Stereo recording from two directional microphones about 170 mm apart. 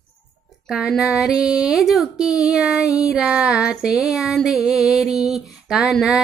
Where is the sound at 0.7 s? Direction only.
5° right (ahead or behind).